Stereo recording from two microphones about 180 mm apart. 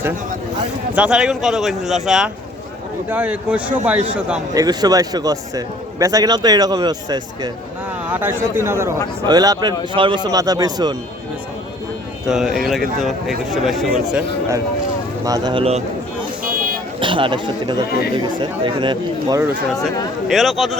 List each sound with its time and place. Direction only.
0.9 s a man's voice: 5° right (ahead or behind)
4.5 s a man's voice: 20° right (ahead or behind)
8.0 s a man's voice: 10° right (ahead or behind)
12.3 s speech: 5° right (ahead or behind)
15.2 s a man's voice: 20° right (ahead or behind)
17.0 s a man's voice: 30° right (ahead or behind)
20.2 s speech: centre (ahead or behind)